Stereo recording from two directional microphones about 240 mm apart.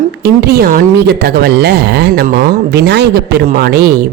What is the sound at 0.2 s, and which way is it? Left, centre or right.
A woman's voice, right.